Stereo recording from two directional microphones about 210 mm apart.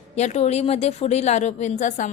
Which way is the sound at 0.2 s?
30° left (ahead or behind).